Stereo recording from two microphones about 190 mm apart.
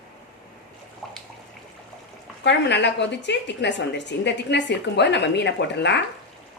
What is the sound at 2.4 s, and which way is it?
A woman's voice, 65° left (ahead or behind).